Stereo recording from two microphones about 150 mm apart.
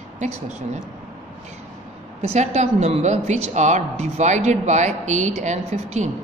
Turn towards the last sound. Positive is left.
turn(degrees=-50)  # may be behind; listen again after turning